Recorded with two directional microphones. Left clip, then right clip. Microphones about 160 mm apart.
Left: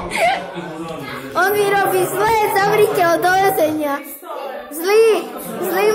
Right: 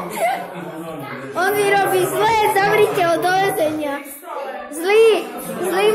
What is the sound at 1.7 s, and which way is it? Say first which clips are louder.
A woman's voice: even; 5° left (ahead or behind).